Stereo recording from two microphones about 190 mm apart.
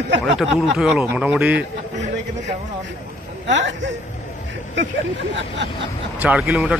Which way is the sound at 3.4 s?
70° right (ahead or behind).